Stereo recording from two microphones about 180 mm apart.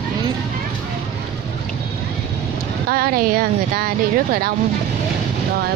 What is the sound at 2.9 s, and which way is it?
Speech, 55° right (ahead or behind).